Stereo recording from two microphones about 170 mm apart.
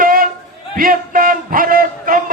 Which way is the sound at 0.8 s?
55° right (ahead or behind).